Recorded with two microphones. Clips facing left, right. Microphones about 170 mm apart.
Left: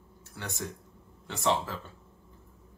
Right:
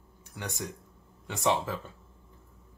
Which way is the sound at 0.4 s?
15° right (ahead or behind).